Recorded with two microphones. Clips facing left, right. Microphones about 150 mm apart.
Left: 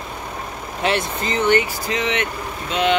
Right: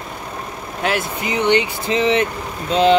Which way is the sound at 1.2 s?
15° right (ahead or behind).